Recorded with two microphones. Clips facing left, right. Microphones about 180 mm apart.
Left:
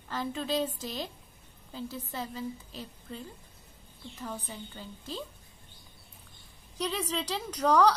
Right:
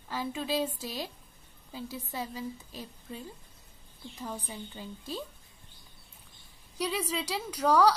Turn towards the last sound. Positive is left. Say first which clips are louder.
# even
turn(degrees=-10)  # may be behind; listen again after turning